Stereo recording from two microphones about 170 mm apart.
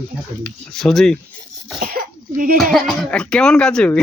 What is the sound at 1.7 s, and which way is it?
Speech, 60° right (ahead or behind).